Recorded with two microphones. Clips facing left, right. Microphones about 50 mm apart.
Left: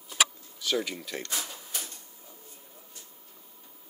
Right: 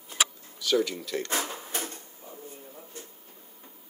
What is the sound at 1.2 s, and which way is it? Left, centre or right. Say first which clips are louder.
Drawer open or close: right 6 dB; right.